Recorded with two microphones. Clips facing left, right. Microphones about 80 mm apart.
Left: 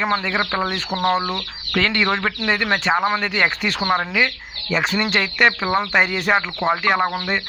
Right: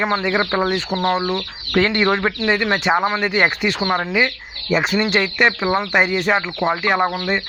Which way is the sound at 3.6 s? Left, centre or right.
Centre.